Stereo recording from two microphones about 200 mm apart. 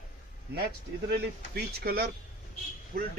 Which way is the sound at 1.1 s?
50° right (ahead or behind).